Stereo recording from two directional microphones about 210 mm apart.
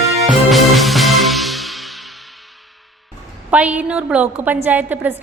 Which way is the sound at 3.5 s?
5° right (ahead or behind).